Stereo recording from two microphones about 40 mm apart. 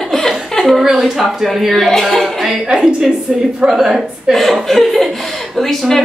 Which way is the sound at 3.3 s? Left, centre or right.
Right.